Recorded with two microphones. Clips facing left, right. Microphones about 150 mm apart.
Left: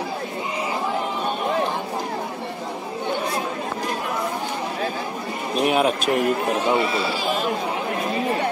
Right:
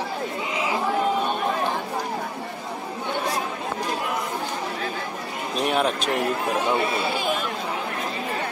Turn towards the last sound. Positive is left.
turn(degrees=-55)  # may be behind; listen again after turning